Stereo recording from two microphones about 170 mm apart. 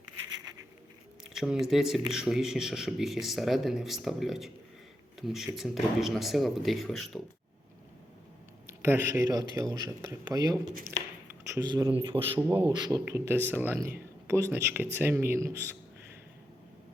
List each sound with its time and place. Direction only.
1.2 s speech: centre (ahead or behind)
8.6 s speech: 15° right (ahead or behind)
11.9 s a man's voice: 30° right (ahead or behind)
12.4 s speech: 15° right (ahead or behind)
12.6 s speech: 25° right (ahead or behind)
13.1 s speech: 15° right (ahead or behind)